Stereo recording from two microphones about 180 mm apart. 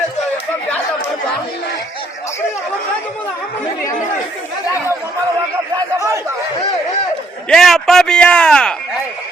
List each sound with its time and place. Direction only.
7.4 s a man's voice: centre (ahead or behind)